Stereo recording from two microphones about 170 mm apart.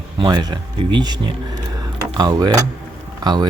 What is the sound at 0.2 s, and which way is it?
Speech, 25° right (ahead or behind).